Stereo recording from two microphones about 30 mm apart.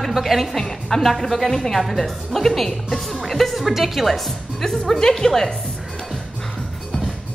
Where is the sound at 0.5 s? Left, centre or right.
Centre.